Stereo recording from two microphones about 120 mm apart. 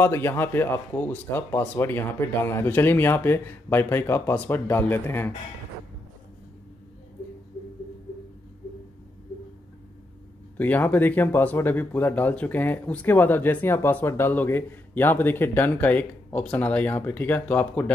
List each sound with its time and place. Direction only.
0.0 s speech: 20° left (ahead or behind)
10.6 s speech: 15° left (ahead or behind)